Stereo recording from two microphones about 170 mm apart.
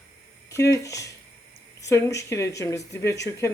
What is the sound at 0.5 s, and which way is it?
Speech, 20° left (ahead or behind).